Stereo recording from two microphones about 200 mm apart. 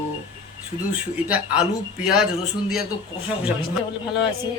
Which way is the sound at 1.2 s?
5° right (ahead or behind).